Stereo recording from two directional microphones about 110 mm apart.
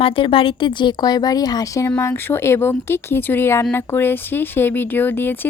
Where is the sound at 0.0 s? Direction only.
55° left (ahead or behind).